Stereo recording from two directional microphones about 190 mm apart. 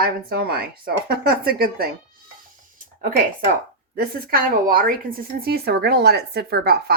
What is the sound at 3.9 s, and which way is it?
A woman's voice, 50° right (ahead or behind).